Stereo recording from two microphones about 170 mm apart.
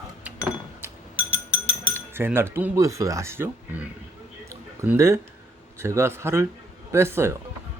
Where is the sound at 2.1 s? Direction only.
15° right (ahead or behind).